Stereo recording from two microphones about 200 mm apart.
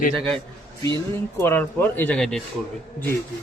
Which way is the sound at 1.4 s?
10° left (ahead or behind).